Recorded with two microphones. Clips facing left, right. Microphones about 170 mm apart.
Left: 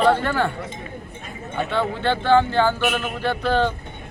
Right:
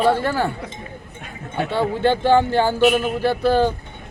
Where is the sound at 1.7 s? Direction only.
10° right (ahead or behind).